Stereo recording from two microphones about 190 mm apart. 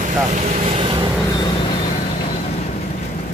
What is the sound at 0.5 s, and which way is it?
Speech, 35° right (ahead or behind).